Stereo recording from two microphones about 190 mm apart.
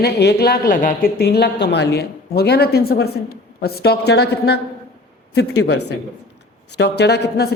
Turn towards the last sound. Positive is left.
turn(degrees=60)  # may be behind; listen again after turning